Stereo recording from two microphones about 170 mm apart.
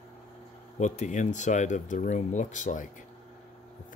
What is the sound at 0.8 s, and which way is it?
Speech, 45° left (ahead or behind).